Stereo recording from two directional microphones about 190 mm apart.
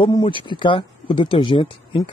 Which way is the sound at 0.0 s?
25° left (ahead or behind).